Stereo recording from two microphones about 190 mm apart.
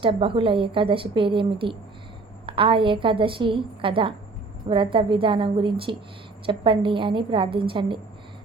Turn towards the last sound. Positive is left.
turn(degrees=-25)  # may be behind; listen again after turning